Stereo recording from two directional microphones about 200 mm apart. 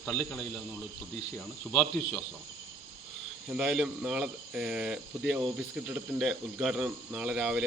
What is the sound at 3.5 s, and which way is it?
Speech, 5° right (ahead or behind).